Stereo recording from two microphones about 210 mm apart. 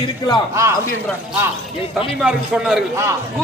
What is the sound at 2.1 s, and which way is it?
Speech, 5° right (ahead or behind).